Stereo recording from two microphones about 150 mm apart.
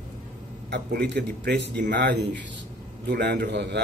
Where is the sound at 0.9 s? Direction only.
90° right.